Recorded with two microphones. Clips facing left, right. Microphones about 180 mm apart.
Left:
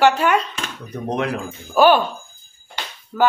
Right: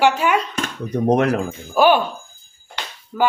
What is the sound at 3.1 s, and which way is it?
Speech, 5° right (ahead or behind).